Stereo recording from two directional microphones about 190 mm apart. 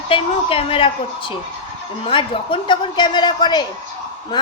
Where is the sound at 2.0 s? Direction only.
25° left (ahead or behind).